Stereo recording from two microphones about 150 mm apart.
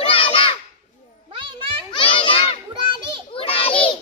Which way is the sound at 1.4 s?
35° right (ahead or behind).